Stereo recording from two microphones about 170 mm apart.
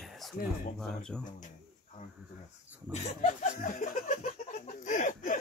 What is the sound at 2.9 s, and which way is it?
Speech, 45° left (ahead or behind).